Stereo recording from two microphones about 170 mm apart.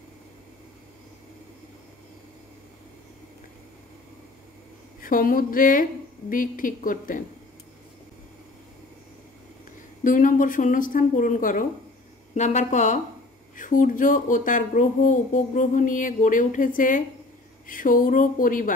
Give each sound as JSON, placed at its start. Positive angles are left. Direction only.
{"t": 5.0, "sound": "speech", "side_deg": 55}
{"t": 10.0, "sound": "speech", "side_deg": 50}